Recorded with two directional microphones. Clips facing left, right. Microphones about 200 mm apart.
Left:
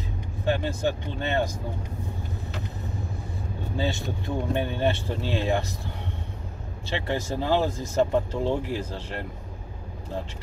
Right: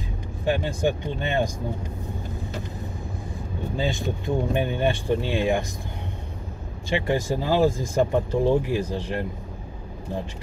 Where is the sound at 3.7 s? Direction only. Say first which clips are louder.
Right 2 dB; 15° right (ahead or behind).